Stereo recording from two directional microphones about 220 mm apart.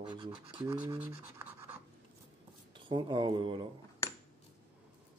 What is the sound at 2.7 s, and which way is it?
Speech, 20° right (ahead or behind).